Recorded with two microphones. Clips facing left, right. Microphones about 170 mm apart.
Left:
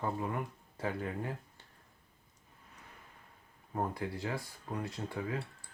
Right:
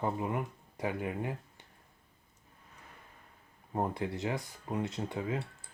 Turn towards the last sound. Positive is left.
turn(degrees=-20)  # may be behind; listen again after turning